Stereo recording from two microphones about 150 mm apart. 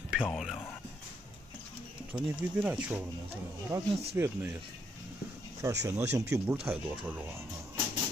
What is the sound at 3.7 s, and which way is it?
Speech, 25° right (ahead or behind).